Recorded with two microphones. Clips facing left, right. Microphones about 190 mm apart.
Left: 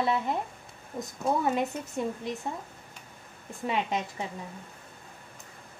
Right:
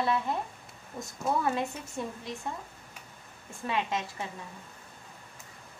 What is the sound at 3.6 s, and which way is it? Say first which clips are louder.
Speech: left 2 dB; 15° left (ahead or behind).